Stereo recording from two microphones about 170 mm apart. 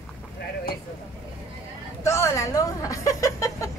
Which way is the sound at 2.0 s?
15° left (ahead or behind).